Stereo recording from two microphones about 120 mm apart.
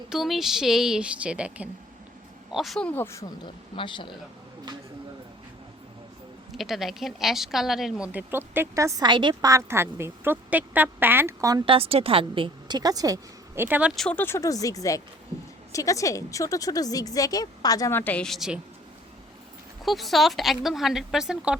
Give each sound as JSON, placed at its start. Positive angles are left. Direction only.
{"t": 0.1, "sound": "speech", "side_deg": -5}
{"t": 2.9, "sound": "a woman's voice", "side_deg": 20}
{"t": 3.4, "sound": "speech", "side_deg": 40}
{"t": 6.5, "sound": "speech", "side_deg": 0}
{"t": 9.0, "sound": "a woman's voice", "side_deg": -40}
{"t": 9.5, "sound": "a woman's voice", "side_deg": -25}
{"t": 11.6, "sound": "a woman's voice", "side_deg": -50}
{"t": 13.6, "sound": "speech", "side_deg": -15}
{"t": 13.9, "sound": "speech", "side_deg": 5}
{"t": 14.2, "sound": "a woman's voice", "side_deg": 20}
{"t": 18.3, "sound": "speech", "side_deg": -5}
{"t": 19.8, "sound": "speech", "side_deg": 0}